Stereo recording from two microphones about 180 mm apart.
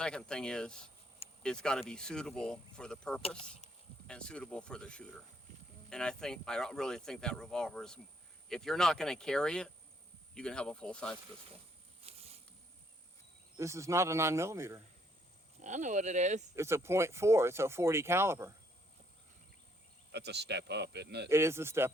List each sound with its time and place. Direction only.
0.0 s speech: 5° left (ahead or behind)
12.0 s a sound: 35° right (ahead or behind)
13.6 s speech: 15° right (ahead or behind)
15.6 s speech: 40° right (ahead or behind)
16.6 s speech: 15° right (ahead or behind)
20.1 s speech: 70° right (ahead or behind)
21.2 s speech: 15° right (ahead or behind)